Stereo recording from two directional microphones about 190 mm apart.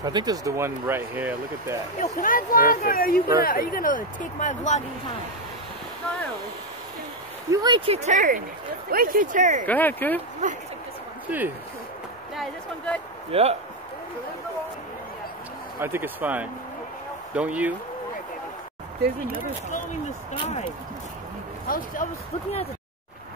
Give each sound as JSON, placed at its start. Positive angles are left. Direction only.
{"t": 0.0, "sound": "speech", "side_deg": -20}
{"t": 2.1, "sound": "speech", "side_deg": 45}
{"t": 7.4, "sound": "speech", "side_deg": -20}
{"t": 9.7, "sound": "speech", "side_deg": 10}
{"t": 11.2, "sound": "speech", "side_deg": -10}
{"t": 12.4, "sound": "speech", "side_deg": 5}
{"t": 13.3, "sound": "speech", "side_deg": -35}
{"t": 15.8, "sound": "speech", "side_deg": -10}
{"t": 20.3, "sound": "speech", "side_deg": 35}
{"t": 21.6, "sound": "speech", "side_deg": 45}